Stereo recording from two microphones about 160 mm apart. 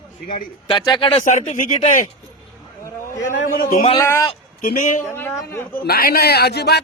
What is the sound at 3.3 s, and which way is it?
Speech, 60° left (ahead or behind).